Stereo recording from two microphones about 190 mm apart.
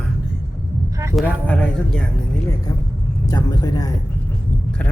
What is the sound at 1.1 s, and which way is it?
Speech, 5° left (ahead or behind).